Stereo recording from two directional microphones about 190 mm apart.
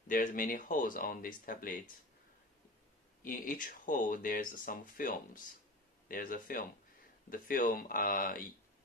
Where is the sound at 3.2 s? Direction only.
45° left (ahead or behind).